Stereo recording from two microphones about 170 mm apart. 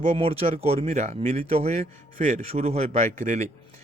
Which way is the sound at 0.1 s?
35° right (ahead or behind).